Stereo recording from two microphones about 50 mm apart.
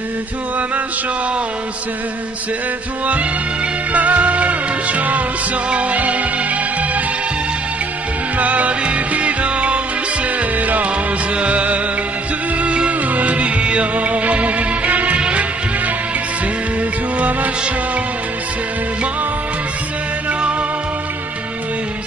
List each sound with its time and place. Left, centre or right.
3.9 s music: right
8.4 s music: right